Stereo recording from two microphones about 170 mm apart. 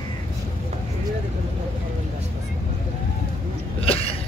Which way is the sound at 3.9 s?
35° left (ahead or behind).